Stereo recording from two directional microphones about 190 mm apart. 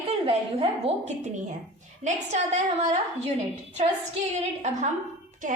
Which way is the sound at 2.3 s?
35° right (ahead or behind).